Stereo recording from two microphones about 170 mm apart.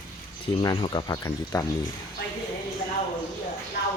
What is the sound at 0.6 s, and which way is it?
Speech, 25° left (ahead or behind).